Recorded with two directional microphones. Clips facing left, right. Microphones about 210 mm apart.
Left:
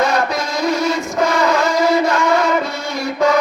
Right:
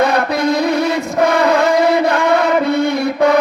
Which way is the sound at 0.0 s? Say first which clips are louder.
Right 3 dB; 60° right (ahead or behind).